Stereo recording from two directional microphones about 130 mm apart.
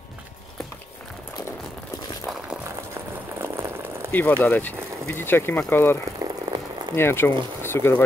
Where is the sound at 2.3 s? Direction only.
5° right (ahead or behind).